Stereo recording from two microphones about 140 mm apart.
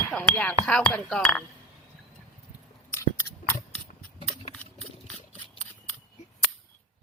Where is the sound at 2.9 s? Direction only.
15° left (ahead or behind).